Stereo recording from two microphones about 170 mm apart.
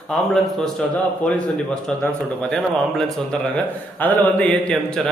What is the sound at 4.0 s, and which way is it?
Mantra, 10° left (ahead or behind).